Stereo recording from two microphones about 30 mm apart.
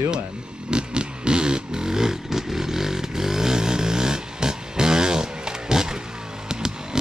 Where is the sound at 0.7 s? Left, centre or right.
Right.